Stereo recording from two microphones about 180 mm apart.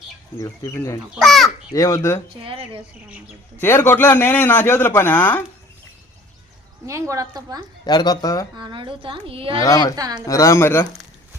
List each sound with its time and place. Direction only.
0.3 s a man's voice: 20° left (ahead or behind)
1.1 s a child's voice: centre (ahead or behind)
1.7 s a man's voice: 20° left (ahead or behind)
2.4 s a woman's voice: 30° right (ahead or behind)
3.6 s a man's voice: 15° left (ahead or behind)
6.8 s a woman's voice: 15° right (ahead or behind)
7.9 s speech: 20° left (ahead or behind)
8.5 s a woman's voice: 25° right (ahead or behind)
9.6 s speech: 20° left (ahead or behind)
9.9 s a woman's voice: 20° right (ahead or behind)
10.2 s a man's voice: 15° left (ahead or behind)